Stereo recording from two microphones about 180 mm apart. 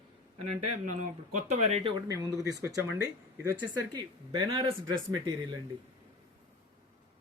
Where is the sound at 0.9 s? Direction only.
40° right (ahead or behind).